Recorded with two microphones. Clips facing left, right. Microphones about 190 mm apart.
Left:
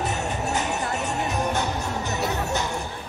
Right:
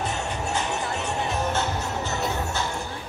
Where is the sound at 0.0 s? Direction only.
20° left (ahead or behind).